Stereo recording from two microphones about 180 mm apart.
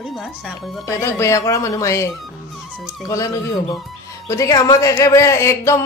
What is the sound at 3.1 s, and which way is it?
Speech, 15° left (ahead or behind).